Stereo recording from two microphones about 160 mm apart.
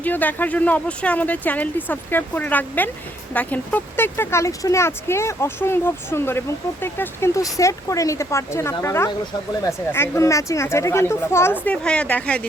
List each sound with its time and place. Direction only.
0.0 s speech: 10° left (ahead or behind)